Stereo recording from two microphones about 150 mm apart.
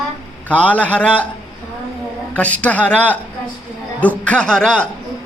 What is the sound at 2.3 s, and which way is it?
A man's voice, 10° left (ahead or behind).